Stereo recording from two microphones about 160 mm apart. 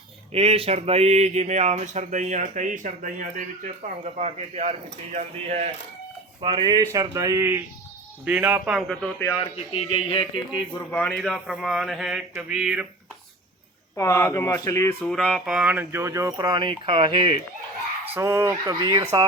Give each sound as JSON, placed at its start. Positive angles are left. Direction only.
{"t": 0.3, "sound": "speech", "side_deg": -40}
{"t": 4.0, "sound": "speech", "side_deg": -40}
{"t": 6.4, "sound": "a man's voice", "side_deg": -25}
{"t": 9.0, "sound": "speech", "side_deg": 10}
{"t": 9.4, "sound": "speech", "side_deg": 35}
{"t": 10.9, "sound": "speech", "side_deg": 5}
{"t": 13.9, "sound": "speech", "side_deg": 15}
{"t": 15.1, "sound": "speech", "side_deg": 5}
{"t": 18.1, "sound": "a man's voice", "side_deg": -15}